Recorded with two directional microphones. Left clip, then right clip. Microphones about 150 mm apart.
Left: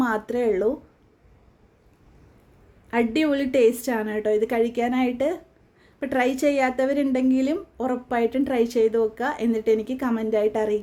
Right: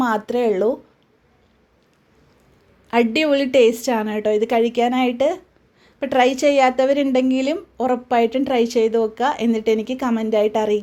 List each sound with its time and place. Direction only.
0.0 s a woman's voice: 10° right (ahead or behind)
2.9 s a woman's voice: 10° right (ahead or behind)